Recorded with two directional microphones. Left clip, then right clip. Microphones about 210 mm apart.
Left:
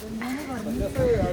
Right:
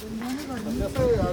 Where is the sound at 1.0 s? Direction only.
5° right (ahead or behind).